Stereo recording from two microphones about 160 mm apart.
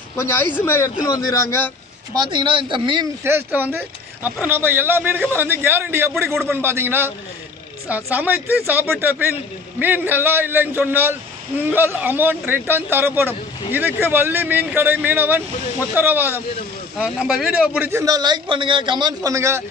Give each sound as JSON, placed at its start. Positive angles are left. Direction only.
{"t": 0.1, "sound": "speech", "side_deg": 15}
{"t": 2.1, "sound": "a man's voice", "side_deg": -30}
{"t": 3.3, "sound": "a man's voice", "side_deg": -15}